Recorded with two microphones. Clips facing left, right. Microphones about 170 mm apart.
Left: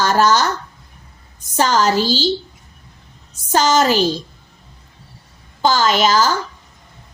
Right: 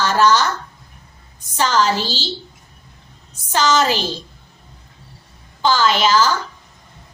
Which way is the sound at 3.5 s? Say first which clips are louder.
Left 3 dB; 45° left (ahead or behind).